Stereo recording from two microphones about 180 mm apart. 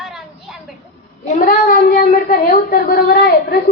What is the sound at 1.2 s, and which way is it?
A child's voice, 45° left (ahead or behind).